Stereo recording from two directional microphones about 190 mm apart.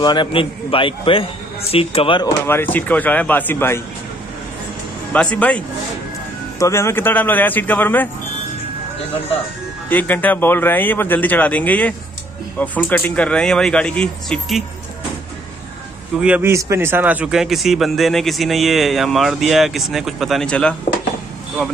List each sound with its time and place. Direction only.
0.0 s a man's voice: 25° left (ahead or behind)
2.4 s speech: 10° left (ahead or behind)
5.1 s speech: 5° left (ahead or behind)
6.6 s speech: 15° left (ahead or behind)
9.8 s speech: 10° left (ahead or behind)
16.2 s speech: 10° right (ahead or behind)